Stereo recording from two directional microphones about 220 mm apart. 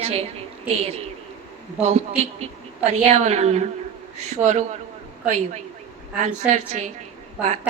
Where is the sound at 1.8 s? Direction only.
30° right (ahead or behind).